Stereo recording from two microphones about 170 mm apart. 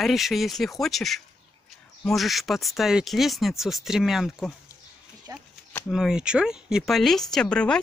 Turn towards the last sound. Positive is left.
turn(degrees=5)  # may be behind; listen again after turning